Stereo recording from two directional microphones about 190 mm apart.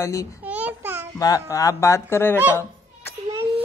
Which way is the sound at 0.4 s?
10° right (ahead or behind).